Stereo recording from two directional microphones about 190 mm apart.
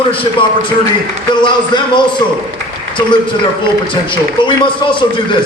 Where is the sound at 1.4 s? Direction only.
25° left (ahead or behind).